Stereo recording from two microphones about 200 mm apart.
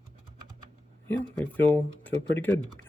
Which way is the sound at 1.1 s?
5° left (ahead or behind).